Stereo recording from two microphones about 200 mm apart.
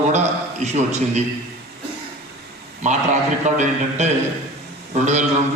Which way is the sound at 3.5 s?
35° right (ahead or behind).